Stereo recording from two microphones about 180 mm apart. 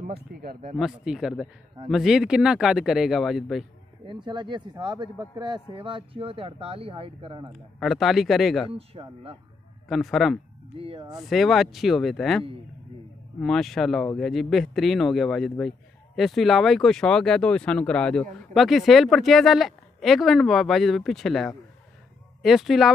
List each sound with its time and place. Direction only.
0.0 s speech: 55° right (ahead or behind)
0.7 s speech: centre (ahead or behind)
4.1 s speech: 25° right (ahead or behind)
7.8 s speech: centre (ahead or behind)
8.7 s speech: 30° right (ahead or behind)
9.8 s speech: centre (ahead or behind)
10.8 s speech: 30° right (ahead or behind)
11.2 s speech: centre (ahead or behind)